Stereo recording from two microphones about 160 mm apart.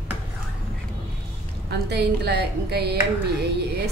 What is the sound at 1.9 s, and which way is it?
A woman's voice, 90° right.